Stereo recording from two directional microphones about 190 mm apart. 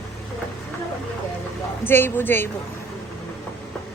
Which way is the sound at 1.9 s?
10° left (ahead or behind).